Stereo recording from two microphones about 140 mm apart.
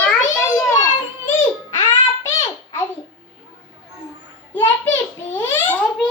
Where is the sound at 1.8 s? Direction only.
20° left (ahead or behind).